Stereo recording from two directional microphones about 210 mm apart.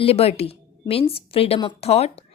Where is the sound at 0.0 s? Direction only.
30° left (ahead or behind).